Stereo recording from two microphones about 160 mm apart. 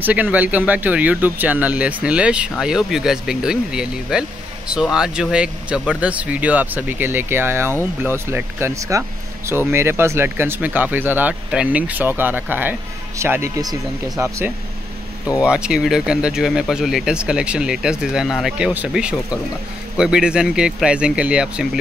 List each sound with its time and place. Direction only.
0.0 s speech: 10° right (ahead or behind)
15.4 s speech: 5° right (ahead or behind)